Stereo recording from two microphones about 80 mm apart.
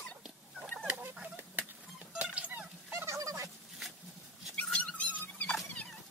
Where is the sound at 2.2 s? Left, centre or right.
Centre.